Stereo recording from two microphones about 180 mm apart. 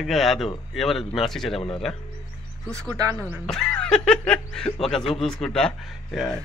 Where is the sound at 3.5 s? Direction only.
5° left (ahead or behind).